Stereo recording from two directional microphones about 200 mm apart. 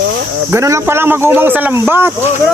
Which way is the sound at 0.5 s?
15° right (ahead or behind).